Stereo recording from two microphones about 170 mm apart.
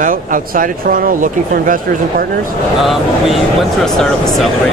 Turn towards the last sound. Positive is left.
turn(degrees=5)  # may be behind; listen again after turning